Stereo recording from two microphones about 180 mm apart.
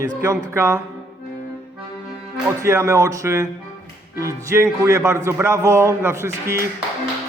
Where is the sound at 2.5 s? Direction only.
15° right (ahead or behind).